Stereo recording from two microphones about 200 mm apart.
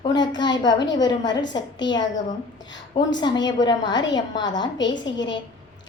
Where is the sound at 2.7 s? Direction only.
20° left (ahead or behind).